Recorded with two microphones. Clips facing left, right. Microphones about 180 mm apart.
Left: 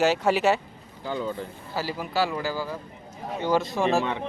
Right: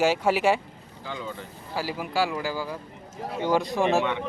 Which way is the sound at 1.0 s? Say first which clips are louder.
Left 6 dB; 40° left (ahead or behind).